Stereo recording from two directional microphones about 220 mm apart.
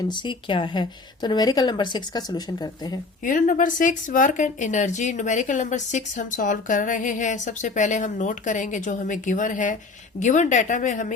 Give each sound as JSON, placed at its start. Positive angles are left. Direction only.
{"t": 0.0, "sound": "speech", "side_deg": 20}
{"t": 3.2, "sound": "speech", "side_deg": 35}